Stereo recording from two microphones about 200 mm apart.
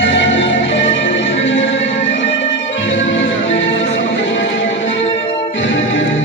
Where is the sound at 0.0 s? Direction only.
65° left (ahead or behind).